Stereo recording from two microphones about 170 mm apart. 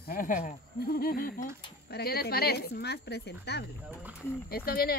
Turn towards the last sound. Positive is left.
turn(degrees=60)  # may be behind; listen again after turning